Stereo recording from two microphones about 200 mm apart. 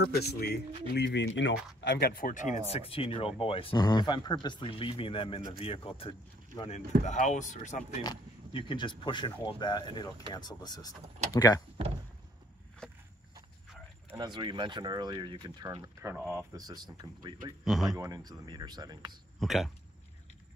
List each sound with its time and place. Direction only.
0.1 s speech: 55° left (ahead or behind)
1.8 s speech: 55° left (ahead or behind); by 7.8 s 35° left (ahead or behind)
8.0 s speech: 25° left (ahead or behind)
14.1 s speech: 20° right (ahead or behind)
19.4 s speech: centre (ahead or behind)